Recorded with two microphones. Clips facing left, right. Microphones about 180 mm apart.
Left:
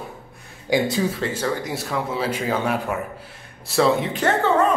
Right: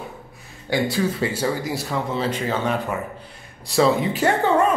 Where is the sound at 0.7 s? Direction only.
20° left (ahead or behind).